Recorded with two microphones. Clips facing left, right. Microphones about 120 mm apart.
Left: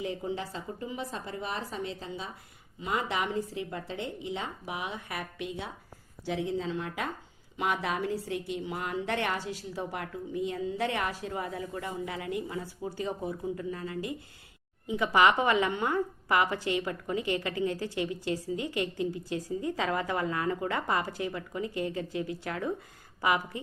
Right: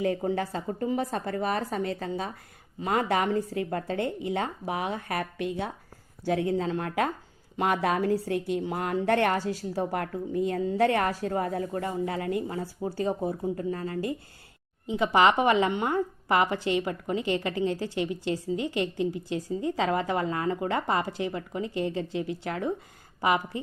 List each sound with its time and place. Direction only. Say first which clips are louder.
0.0 s a woman's voice: right 7 dB; 50° right (ahead or behind)
14.8 s speech: right 2 dB; 25° right (ahead or behind)